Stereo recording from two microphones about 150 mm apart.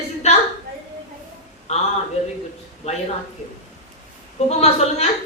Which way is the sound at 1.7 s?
45° left (ahead or behind).